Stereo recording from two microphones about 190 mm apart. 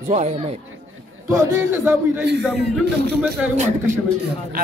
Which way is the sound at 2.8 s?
60° right (ahead or behind).